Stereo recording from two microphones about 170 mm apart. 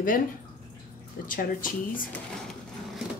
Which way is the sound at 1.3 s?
55° left (ahead or behind).